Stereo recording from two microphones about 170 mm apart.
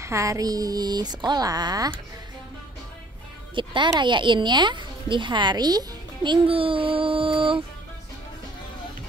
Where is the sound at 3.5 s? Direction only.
30° right (ahead or behind).